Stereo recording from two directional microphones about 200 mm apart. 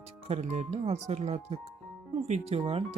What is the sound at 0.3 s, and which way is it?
Speech, 35° right (ahead or behind).